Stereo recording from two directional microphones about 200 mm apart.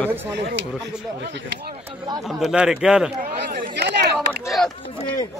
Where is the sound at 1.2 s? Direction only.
60° right (ahead or behind).